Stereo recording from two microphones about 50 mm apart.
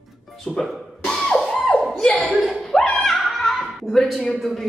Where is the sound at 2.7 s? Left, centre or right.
Centre.